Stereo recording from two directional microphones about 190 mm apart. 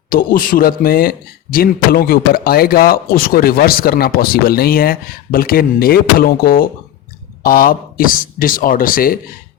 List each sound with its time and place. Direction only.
0.1 s a man's voice: 50° left (ahead or behind)